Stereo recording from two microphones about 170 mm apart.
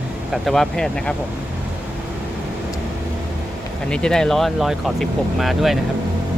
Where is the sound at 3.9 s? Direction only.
5° left (ahead or behind).